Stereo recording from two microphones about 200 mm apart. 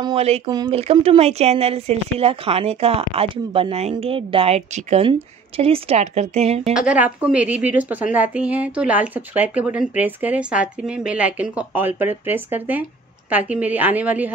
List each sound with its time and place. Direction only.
0.0 s speech: 30° right (ahead or behind)
6.7 s a woman's voice: 5° right (ahead or behind)